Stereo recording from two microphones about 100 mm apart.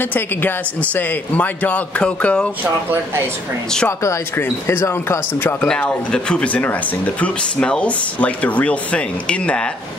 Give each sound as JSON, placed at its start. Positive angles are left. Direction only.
{"t": 0.1, "sound": "speech", "side_deg": 20}
{"t": 4.0, "sound": "speech", "side_deg": 30}
{"t": 5.6, "sound": "speech", "side_deg": 10}